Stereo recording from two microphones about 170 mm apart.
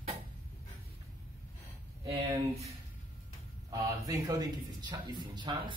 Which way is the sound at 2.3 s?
20° right (ahead or behind).